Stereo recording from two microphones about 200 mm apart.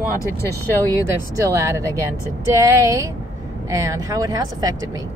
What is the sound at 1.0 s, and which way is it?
Speech, 15° right (ahead or behind).